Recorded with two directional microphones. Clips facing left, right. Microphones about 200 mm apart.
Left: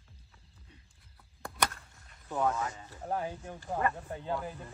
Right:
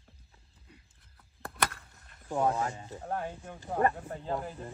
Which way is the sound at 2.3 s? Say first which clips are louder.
Right 2 dB; 30° right (ahead or behind).